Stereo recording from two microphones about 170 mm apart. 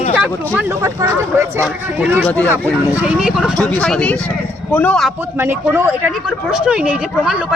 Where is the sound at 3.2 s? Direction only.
5° right (ahead or behind).